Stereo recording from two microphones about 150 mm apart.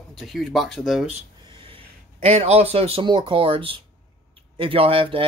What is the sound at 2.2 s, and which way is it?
Speech, 40° right (ahead or behind).